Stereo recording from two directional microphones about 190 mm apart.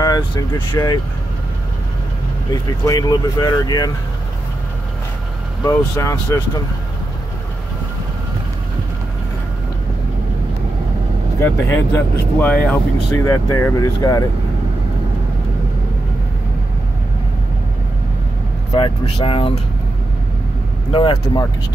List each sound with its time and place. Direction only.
0.0 s speech: 20° left (ahead or behind)
2.5 s speech: 20° left (ahead or behind)
5.6 s speech: 15° left (ahead or behind)
11.3 s speech: 15° left (ahead or behind)
18.7 s speech: 30° left (ahead or behind)
20.9 s speech: 30° left (ahead or behind)